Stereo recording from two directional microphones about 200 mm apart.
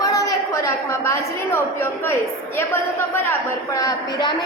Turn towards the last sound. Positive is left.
turn(degrees=20)  # may be behind; listen again after turning